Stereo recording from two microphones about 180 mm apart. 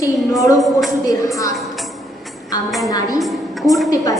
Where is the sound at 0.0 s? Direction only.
20° left (ahead or behind).